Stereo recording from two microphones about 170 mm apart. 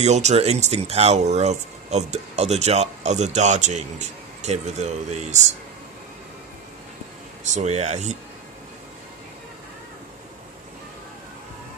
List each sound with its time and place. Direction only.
0.0 s speech: 40° right (ahead or behind)
7.4 s speech: 40° right (ahead or behind)